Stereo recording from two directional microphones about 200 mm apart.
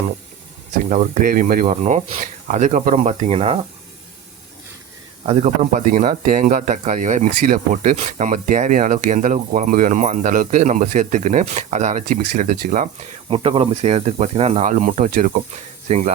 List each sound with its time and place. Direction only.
0.9 s speech: 40° right (ahead or behind)
5.2 s speech: 35° right (ahead or behind)
13.3 s speech: 30° right (ahead or behind)